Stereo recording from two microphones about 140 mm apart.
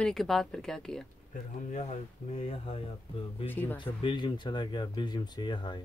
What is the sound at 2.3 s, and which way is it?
Speech, 45° left (ahead or behind).